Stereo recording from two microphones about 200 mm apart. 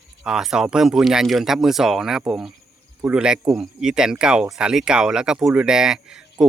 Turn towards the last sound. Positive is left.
turn(degrees=-5)  # may be behind; listen again after turning